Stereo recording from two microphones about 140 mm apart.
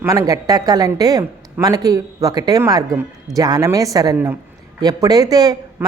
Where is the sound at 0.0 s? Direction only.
25° right (ahead or behind).